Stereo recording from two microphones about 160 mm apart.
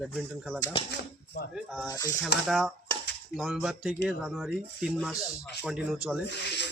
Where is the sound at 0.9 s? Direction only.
90° left.